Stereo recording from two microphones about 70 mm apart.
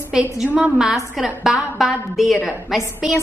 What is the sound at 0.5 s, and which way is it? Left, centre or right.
Speech, right.